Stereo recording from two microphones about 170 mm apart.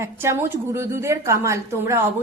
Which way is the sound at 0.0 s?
15° right (ahead or behind).